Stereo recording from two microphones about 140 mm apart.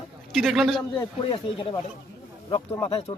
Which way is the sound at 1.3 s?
40° left (ahead or behind).